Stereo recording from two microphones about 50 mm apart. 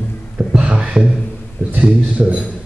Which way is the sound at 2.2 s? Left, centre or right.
Right.